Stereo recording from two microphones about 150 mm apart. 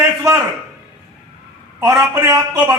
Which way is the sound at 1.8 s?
20° right (ahead or behind).